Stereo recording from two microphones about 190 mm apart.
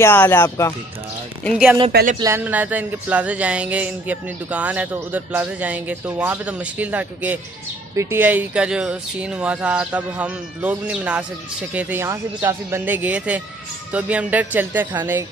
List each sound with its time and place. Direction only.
0.0 s speech: 10° left (ahead or behind)
1.9 s speech: 55° right (ahead or behind)
2.1 s speech: 15° right (ahead or behind)